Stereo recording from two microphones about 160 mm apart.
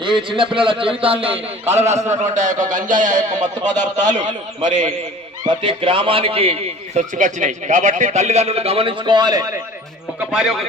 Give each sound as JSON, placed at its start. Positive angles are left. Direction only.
{"t": 0.0, "sound": "a man's voice", "side_deg": -30}
{"t": 5.5, "sound": "a man's voice", "side_deg": -30}
{"t": 10.2, "sound": "a man's voice", "side_deg": -5}